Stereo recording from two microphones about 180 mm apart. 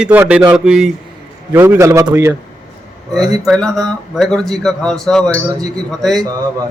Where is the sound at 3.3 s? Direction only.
Centre (ahead or behind).